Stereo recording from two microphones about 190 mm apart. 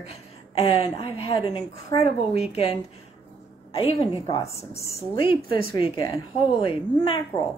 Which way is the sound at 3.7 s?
30° left (ahead or behind).